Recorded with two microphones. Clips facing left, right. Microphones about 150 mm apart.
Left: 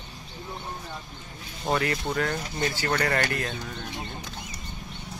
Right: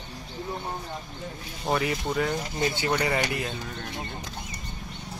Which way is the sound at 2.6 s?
20° right (ahead or behind).